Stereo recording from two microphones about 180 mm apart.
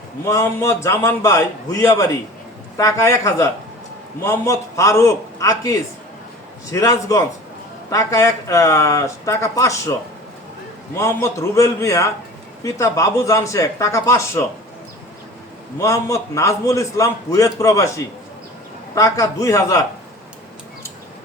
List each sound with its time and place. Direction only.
0.3 s a man's voice: 15° left (ahead or behind)
10.9 s a man's voice: 15° left (ahead or behind)
15.8 s a man's voice: 15° left (ahead or behind)